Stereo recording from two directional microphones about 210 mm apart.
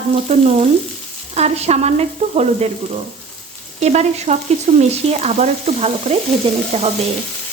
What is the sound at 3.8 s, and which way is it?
Stir, 30° right (ahead or behind).